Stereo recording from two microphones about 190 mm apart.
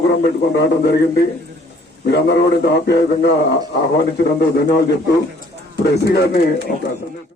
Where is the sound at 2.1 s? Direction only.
60° left (ahead or behind).